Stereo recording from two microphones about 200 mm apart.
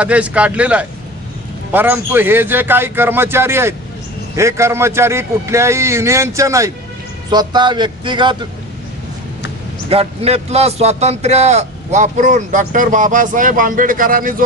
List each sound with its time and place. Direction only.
0.0 s a man's voice: 5° right (ahead or behind); by 8.4 s 25° right (ahead or behind)
9.8 s a man's voice: 30° right (ahead or behind)